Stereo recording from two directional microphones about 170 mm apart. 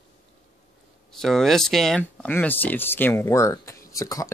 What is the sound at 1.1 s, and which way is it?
Speech, centre (ahead or behind).